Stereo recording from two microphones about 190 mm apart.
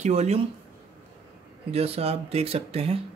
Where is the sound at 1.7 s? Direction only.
30° right (ahead or behind).